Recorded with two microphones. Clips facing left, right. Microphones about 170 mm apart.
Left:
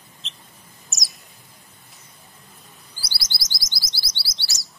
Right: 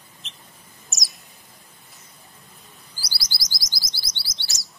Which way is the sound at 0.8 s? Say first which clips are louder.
Right 1 dB; centre (ahead or behind).